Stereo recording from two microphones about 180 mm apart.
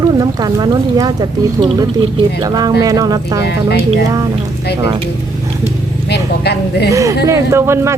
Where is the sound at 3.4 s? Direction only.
65° left (ahead or behind).